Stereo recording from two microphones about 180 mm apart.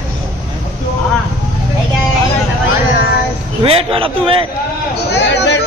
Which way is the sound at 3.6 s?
30° right (ahead or behind).